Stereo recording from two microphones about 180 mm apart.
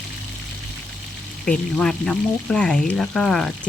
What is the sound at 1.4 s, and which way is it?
Speech, 5° left (ahead or behind).